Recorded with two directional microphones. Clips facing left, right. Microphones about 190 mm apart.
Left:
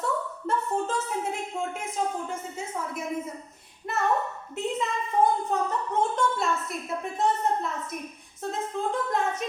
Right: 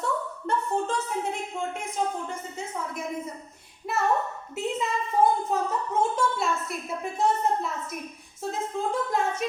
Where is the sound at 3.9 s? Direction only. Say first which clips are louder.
Right 1 dB; centre (ahead or behind).